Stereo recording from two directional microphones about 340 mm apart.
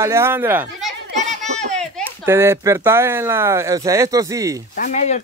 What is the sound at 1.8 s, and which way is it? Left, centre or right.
Speech, centre.